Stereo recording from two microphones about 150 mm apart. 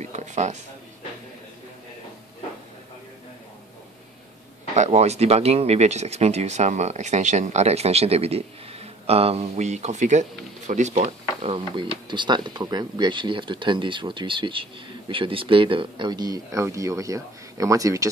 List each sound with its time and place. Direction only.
0.0 s a sound: 55° right (ahead or behind)
4.7 s speech: 50° right (ahead or behind)
11.7 s speech: 30° right (ahead or behind)